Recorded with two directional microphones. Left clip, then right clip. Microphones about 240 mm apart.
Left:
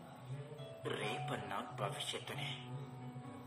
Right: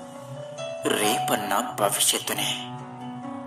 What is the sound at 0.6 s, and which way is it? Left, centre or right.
A man's voice, right.